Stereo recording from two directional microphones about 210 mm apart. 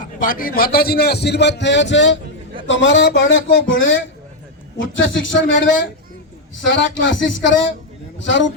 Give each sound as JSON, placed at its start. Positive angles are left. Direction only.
{"t": 0.0, "sound": "a man's voice", "side_deg": 40}